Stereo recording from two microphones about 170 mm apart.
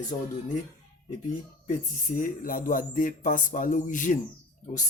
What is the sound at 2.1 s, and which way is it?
Speech, 55° left (ahead or behind).